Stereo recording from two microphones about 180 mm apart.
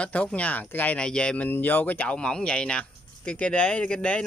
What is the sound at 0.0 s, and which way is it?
Speech, 5° left (ahead or behind).